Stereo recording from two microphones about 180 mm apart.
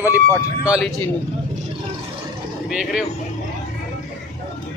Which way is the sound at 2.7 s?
5° right (ahead or behind).